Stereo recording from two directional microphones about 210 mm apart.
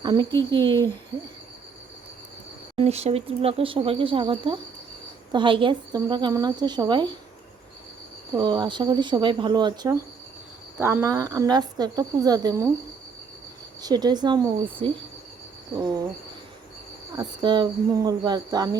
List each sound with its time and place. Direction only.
0.0 s speech: 20° right (ahead or behind)
0.6 s speech: 10° left (ahead or behind)
2.7 s speech: 30° right (ahead or behind)
8.4 s a woman's voice: 20° right (ahead or behind)
13.8 s speech: 20° right (ahead or behind)
17.2 s speech: 20° right (ahead or behind)